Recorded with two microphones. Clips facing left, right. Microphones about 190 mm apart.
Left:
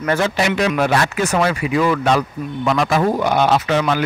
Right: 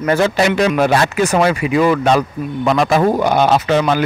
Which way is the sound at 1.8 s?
30° right (ahead or behind).